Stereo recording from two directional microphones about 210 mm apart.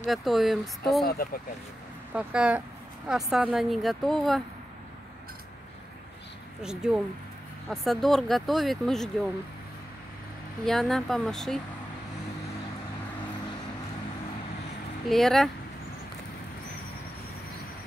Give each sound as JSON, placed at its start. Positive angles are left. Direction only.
{"t": 0.0, "sound": "speech", "side_deg": 0}
{"t": 1.0, "sound": "speech", "side_deg": 45}
{"t": 2.1, "sound": "speech", "side_deg": -5}
{"t": 6.6, "sound": "speech", "side_deg": -5}
{"t": 10.6, "sound": "speech", "side_deg": 0}
{"t": 15.0, "sound": "speech", "side_deg": 0}